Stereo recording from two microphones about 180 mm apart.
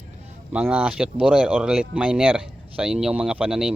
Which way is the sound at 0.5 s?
5° right (ahead or behind).